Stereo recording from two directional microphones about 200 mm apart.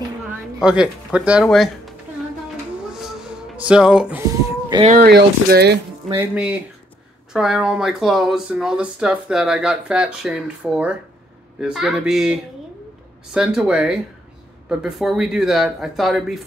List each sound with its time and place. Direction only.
0.6 s speech: 5° right (ahead or behind)
2.9 s music: centre (ahead or behind)
4.8 s speech: 45° right (ahead or behind)
6.1 s speech: 5° right (ahead or behind)